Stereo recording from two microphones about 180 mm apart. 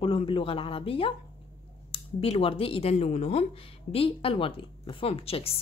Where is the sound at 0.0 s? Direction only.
30° left (ahead or behind).